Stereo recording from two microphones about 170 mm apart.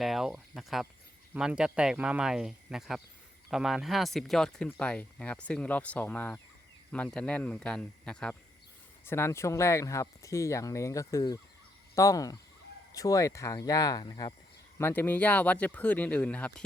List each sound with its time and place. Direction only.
0.0 s speech: centre (ahead or behind); by 14.3 s 25° left (ahead or behind)
14.8 s speech: 10° left (ahead or behind)